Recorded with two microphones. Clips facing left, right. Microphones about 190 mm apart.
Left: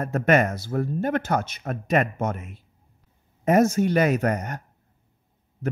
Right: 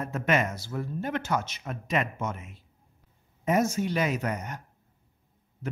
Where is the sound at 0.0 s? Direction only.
55° left (ahead or behind).